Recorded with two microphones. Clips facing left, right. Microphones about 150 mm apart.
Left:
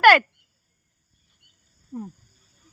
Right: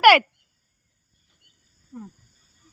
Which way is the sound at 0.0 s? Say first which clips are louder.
Right 1 dB; 10° right (ahead or behind).